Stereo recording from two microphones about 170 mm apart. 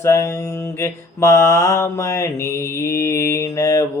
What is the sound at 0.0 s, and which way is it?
Mantra, 15° left (ahead or behind).